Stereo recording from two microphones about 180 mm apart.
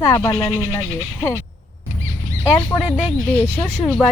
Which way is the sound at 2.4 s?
10° left (ahead or behind).